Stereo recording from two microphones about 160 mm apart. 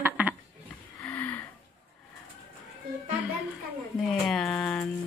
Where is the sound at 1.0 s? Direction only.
10° left (ahead or behind).